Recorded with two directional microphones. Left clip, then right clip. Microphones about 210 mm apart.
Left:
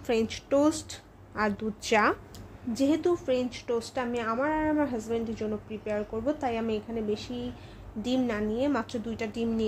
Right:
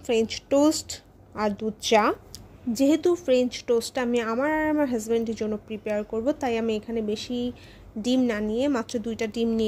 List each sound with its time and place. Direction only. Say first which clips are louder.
0.0 s a woman's voice: right 4 dB; 20° right (ahead or behind)
2.7 s a woman's voice: right 4 dB; 35° right (ahead or behind)